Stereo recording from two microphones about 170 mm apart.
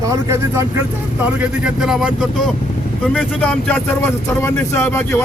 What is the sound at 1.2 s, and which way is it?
Speech, 5° right (ahead or behind).